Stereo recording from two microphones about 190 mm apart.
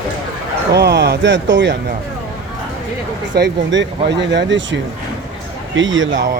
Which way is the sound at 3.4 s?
65° right (ahead or behind).